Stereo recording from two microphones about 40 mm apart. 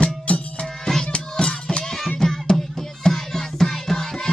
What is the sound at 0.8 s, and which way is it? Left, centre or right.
Music, centre.